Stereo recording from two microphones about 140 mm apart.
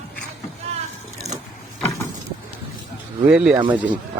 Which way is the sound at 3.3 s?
5° right (ahead or behind).